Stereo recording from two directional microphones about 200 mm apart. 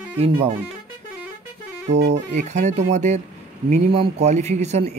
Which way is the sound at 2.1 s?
35° right (ahead or behind).